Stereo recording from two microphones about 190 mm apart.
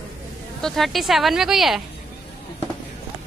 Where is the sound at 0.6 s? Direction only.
Centre (ahead or behind).